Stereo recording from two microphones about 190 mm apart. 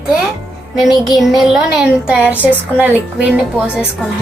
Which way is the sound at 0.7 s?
Centre (ahead or behind).